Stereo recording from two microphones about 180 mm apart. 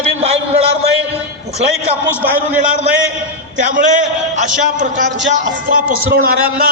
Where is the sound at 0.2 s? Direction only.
35° right (ahead or behind).